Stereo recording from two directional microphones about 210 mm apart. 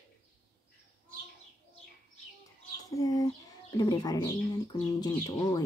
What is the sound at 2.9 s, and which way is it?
Speech, 15° left (ahead or behind).